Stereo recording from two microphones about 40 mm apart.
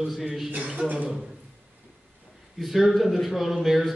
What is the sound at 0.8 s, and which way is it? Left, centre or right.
Speech, right.